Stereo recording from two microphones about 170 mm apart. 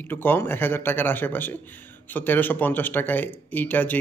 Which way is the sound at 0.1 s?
10° left (ahead or behind).